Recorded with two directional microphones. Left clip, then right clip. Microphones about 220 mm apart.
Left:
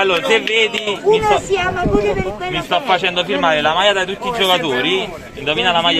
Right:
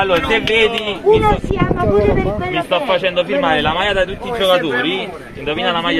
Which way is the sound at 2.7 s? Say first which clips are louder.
Left 1 dB; 30° left (ahead or behind).